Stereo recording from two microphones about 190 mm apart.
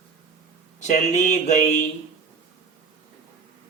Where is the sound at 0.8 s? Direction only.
40° left (ahead or behind).